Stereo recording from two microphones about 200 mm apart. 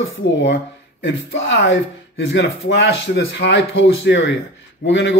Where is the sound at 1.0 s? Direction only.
65° left (ahead or behind).